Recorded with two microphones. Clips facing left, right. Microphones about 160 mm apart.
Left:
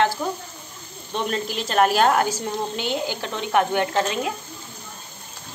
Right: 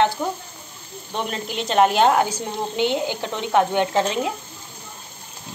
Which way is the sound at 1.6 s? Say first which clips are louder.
Right 2 dB; 20° right (ahead or behind).